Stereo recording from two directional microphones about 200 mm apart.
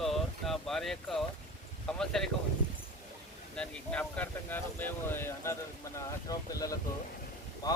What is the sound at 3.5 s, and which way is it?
Speech, 5° left (ahead or behind).